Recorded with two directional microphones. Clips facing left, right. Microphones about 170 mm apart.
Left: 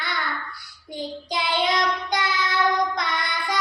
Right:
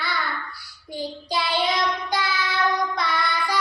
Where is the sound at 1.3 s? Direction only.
20° left (ahead or behind).